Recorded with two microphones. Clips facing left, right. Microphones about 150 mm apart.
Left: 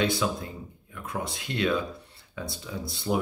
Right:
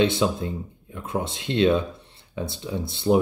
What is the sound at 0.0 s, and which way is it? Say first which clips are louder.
Speech: right 5 dB; 25° right (ahead or behind).